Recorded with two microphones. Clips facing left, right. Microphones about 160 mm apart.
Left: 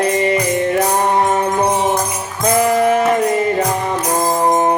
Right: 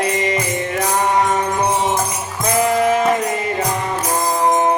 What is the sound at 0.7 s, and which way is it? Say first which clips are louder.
Music: right 1 dB; 35° left (ahead or behind).